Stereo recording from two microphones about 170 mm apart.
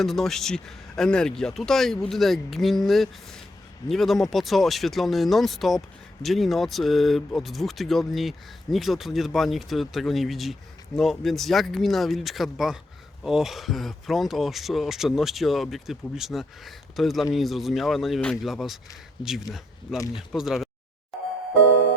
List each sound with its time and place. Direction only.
0.0 s speech: centre (ahead or behind)